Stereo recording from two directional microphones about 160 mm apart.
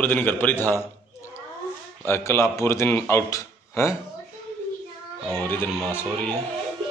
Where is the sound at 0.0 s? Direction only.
10° left (ahead or behind).